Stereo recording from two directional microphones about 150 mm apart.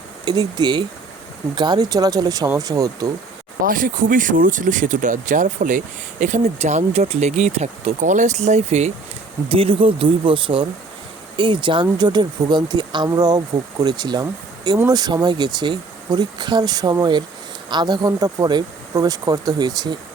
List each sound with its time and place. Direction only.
0.3 s speech: 25° right (ahead or behind)
3.6 s speech: 65° right (ahead or behind); by 8.9 s 50° right (ahead or behind)
9.5 s speech: 35° right (ahead or behind)